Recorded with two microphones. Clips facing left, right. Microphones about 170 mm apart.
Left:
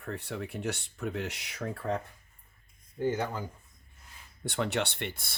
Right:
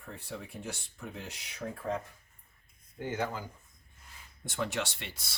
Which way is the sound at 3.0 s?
35° left (ahead or behind).